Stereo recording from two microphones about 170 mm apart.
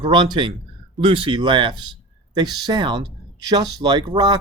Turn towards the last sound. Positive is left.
turn(degrees=-25)  # may be behind; listen again after turning